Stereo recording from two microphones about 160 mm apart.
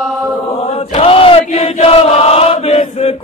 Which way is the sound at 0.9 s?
35° left (ahead or behind).